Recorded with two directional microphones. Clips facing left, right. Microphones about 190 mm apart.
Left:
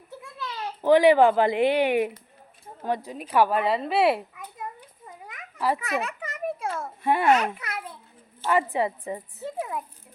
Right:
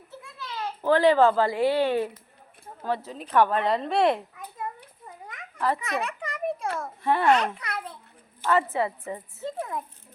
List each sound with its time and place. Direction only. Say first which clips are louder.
0.9 s a child's voice: left 2 dB; 15° left (ahead or behind)
5.2 s a sound: left 1 dB; 10° left (ahead or behind)
6.7 s a child's voice: left 2 dB; 10° left (ahead or behind)